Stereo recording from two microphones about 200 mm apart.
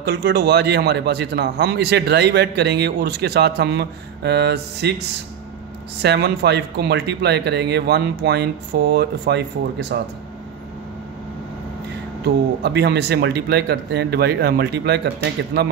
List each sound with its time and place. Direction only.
0.0 s a man's voice: 55° right (ahead or behind)
6.0 s a man's voice: 55° right (ahead or behind)
12.6 s a man's voice: 55° right (ahead or behind)